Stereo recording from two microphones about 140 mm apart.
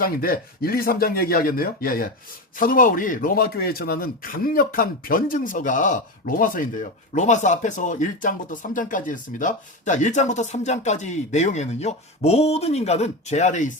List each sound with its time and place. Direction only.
0.0 s speech: 90° left
2.6 s a man's voice: 75° left (ahead or behind)
7.1 s speech: 60° left (ahead or behind)